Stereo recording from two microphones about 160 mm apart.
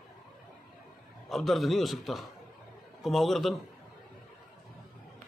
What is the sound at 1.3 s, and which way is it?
A man's voice, centre (ahead or behind).